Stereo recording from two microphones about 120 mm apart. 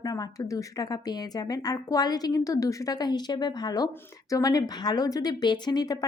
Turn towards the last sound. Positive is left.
turn(degrees=35)  # may be behind; listen again after turning